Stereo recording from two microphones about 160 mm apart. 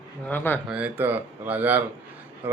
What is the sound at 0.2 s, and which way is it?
Speech, 10° left (ahead or behind).